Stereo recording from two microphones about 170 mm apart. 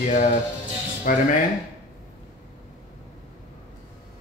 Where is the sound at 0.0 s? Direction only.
45° left (ahead or behind).